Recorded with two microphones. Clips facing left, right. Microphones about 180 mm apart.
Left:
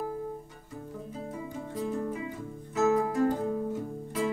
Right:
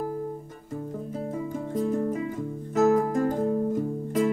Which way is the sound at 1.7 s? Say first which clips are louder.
Right 6 dB; 45° right (ahead or behind).